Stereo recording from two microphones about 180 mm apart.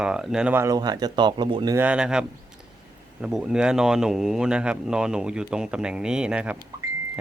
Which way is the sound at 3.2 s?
5° right (ahead or behind).